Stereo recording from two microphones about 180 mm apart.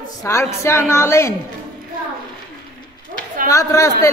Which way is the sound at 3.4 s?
15° left (ahead or behind).